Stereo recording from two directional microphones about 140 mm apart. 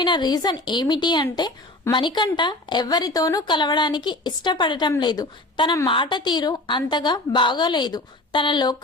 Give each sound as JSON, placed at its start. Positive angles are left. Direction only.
{"t": 0.0, "sound": "speech", "side_deg": 30}